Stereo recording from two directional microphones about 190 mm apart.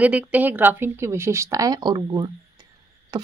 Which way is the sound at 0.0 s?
10° right (ahead or behind).